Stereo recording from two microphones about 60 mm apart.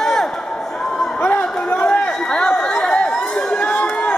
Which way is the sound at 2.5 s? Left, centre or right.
Left.